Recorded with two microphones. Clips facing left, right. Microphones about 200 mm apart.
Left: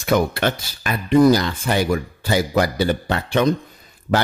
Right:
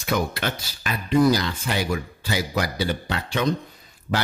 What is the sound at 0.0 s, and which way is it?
Speech, 50° left (ahead or behind).